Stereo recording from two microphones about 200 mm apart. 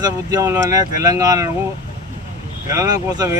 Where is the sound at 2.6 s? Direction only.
15° right (ahead or behind).